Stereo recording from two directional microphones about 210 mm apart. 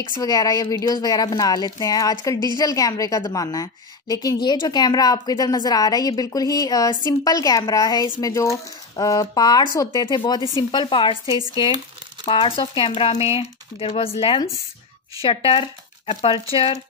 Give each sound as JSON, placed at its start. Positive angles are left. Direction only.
{"t": 0.2, "sound": "a woman's voice", "side_deg": 15}